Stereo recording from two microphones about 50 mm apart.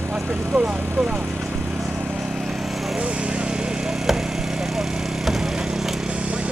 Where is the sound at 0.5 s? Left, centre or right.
Centre.